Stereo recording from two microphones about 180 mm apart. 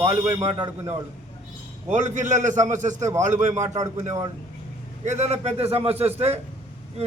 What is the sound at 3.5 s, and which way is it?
Speech, 15° right (ahead or behind).